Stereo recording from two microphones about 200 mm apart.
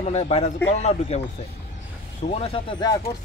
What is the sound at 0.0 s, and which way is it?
Speech, 35° left (ahead or behind).